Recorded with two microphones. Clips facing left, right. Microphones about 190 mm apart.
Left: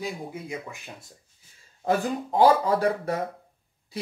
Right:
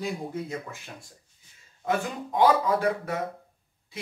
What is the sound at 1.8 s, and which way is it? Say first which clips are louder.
Speech: left 3 dB; 35° left (ahead or behind).